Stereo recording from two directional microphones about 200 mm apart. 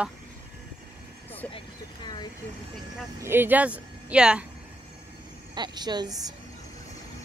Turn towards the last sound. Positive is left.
turn(degrees=-20)  # may be behind; listen again after turning